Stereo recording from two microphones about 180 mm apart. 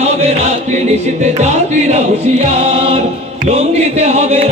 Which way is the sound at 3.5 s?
35° right (ahead or behind).